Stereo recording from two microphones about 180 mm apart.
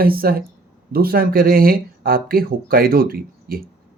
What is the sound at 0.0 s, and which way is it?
Speech, 55° right (ahead or behind).